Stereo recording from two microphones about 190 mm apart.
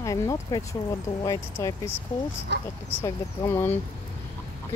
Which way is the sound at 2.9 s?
15° left (ahead or behind).